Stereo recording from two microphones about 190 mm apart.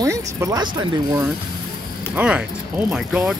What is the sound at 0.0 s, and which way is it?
Speech, 15° right (ahead or behind).